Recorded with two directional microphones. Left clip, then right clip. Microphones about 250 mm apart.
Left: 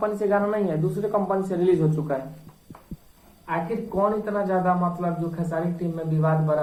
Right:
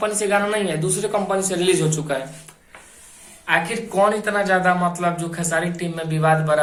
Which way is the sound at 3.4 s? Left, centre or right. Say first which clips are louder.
Right 7 dB; right.